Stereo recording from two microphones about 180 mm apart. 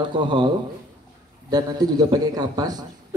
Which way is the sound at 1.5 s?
20° right (ahead or behind).